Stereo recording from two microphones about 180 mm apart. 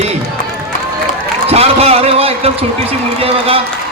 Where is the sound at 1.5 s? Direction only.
35° right (ahead or behind).